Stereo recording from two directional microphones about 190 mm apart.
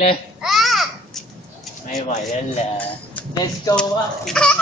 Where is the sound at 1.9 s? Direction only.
35° left (ahead or behind).